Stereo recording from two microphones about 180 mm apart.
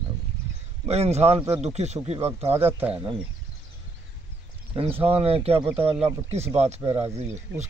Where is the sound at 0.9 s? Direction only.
35° right (ahead or behind).